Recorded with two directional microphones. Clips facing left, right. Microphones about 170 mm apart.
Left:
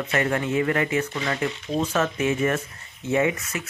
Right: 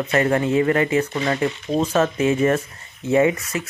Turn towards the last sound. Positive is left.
turn(degrees=-35)  # may be behind; listen again after turning